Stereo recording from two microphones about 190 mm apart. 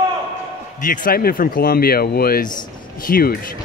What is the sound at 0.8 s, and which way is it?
Speech, 45° left (ahead or behind).